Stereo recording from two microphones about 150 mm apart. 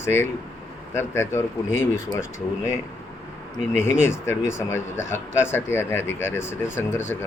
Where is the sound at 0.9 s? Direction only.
15° left (ahead or behind).